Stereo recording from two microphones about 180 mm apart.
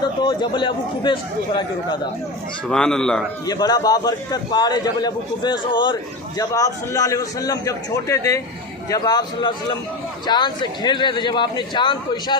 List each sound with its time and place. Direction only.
0.0 s a man's voice: 25° left (ahead or behind)
2.7 s a man's voice: 5° left (ahead or behind)
3.4 s a man's voice: 20° left (ahead or behind)